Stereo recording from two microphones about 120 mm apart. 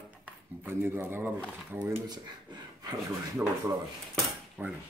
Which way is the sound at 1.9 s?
30° right (ahead or behind).